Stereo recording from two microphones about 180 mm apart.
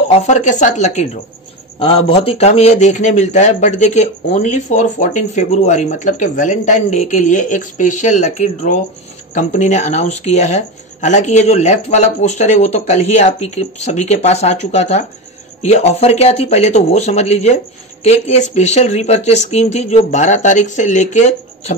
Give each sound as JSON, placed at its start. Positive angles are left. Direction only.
{"t": 0.1, "sound": "speech", "side_deg": 40}